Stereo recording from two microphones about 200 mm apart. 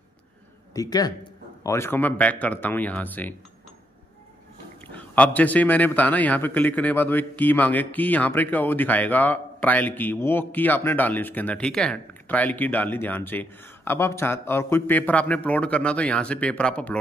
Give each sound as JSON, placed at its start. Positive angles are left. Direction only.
{"t": 0.7, "sound": "a man's voice", "side_deg": 20}
{"t": 4.9, "sound": "a man's voice", "side_deg": 5}